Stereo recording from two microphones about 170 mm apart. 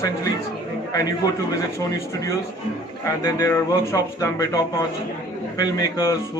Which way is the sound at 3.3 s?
20° left (ahead or behind).